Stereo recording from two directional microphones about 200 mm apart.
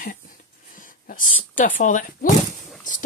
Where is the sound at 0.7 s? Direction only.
40° left (ahead or behind).